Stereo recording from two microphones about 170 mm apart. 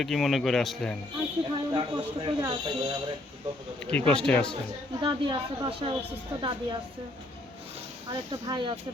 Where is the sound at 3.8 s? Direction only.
5° left (ahead or behind).